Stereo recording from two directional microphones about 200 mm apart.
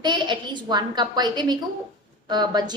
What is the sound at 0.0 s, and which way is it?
A woman's voice, 20° right (ahead or behind).